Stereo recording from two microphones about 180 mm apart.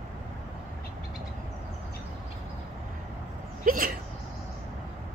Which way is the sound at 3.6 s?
50° right (ahead or behind).